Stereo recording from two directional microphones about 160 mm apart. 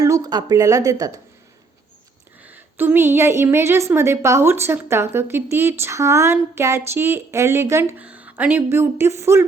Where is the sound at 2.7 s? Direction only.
15° right (ahead or behind).